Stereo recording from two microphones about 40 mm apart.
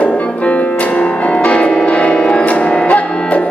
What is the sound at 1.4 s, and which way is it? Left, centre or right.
Change ringing, left.